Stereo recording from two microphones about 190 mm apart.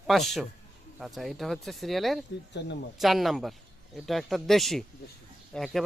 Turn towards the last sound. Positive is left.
turn(degrees=0)  # may be behind; listen again after turning